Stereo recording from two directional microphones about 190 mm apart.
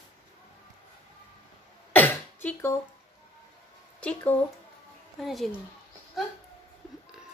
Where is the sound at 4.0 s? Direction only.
5° left (ahead or behind).